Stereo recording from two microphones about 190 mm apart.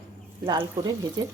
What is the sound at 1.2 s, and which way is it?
Speech, 20° right (ahead or behind).